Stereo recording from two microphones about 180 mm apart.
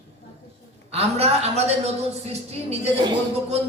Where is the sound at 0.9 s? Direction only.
35° right (ahead or behind).